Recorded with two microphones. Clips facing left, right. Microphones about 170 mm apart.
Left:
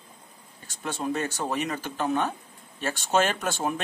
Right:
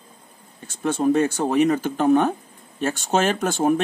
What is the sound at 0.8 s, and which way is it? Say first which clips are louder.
Speech: right 10 dB; 50° right (ahead or behind).